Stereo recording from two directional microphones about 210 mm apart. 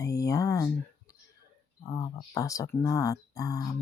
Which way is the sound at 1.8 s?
15° left (ahead or behind).